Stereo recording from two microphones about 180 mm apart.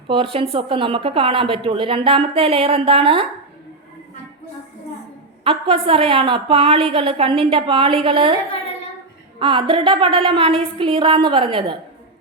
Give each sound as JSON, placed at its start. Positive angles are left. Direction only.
{"t": 0.3, "sound": "a woman's voice", "side_deg": -30}
{"t": 5.4, "sound": "a woman's voice", "side_deg": -30}
{"t": 9.4, "sound": "a woman's voice", "side_deg": -30}